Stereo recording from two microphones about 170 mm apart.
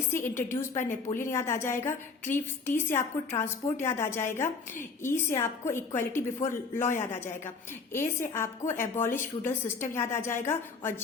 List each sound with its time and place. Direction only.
0.1 s a woman's voice: 15° left (ahead or behind)